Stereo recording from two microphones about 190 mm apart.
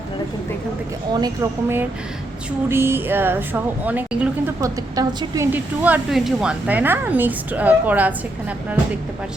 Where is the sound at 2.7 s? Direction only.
10° right (ahead or behind).